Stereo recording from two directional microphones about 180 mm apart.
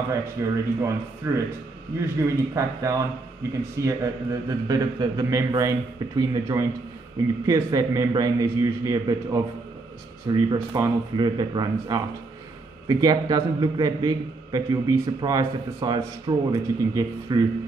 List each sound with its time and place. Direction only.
0.1 s a man's voice: 15° right (ahead or behind)
7.4 s a man's voice: 20° right (ahead or behind)